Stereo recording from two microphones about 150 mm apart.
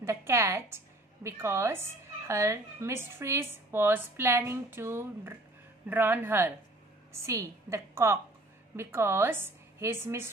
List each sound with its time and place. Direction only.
0.0 s a woman's voice: 15° right (ahead or behind)